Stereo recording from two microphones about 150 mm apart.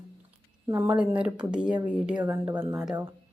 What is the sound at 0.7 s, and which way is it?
Speech, 15° right (ahead or behind).